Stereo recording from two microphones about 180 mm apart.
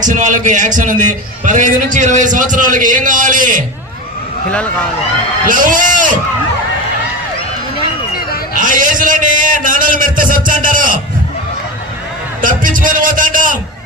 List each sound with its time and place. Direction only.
0.0 s a man's voice: 45° right (ahead or behind)
4.5 s speech: 5° left (ahead or behind)
5.5 s a man's voice: 50° right (ahead or behind)
8.5 s a sound: 45° right (ahead or behind)
12.4 s a man's voice: 50° right (ahead or behind)